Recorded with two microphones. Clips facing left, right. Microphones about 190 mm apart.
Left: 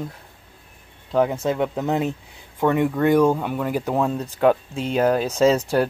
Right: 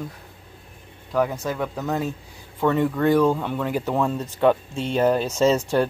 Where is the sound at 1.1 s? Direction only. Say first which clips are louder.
Left 3 dB; 25° left (ahead or behind).